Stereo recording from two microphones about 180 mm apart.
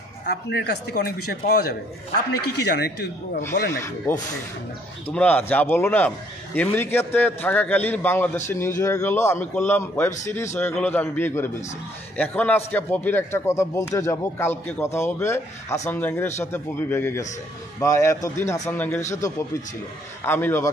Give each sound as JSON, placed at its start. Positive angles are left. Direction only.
{"t": 0.3, "sound": "speech", "side_deg": 65}
{"t": 5.1, "sound": "a man's voice", "side_deg": 10}